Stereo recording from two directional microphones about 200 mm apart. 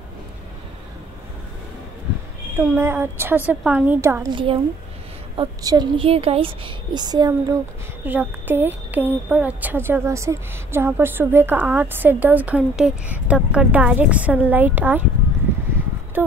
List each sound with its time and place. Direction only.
2.5 s a woman's voice: 10° right (ahead or behind)
16.2 s speech: 10° right (ahead or behind)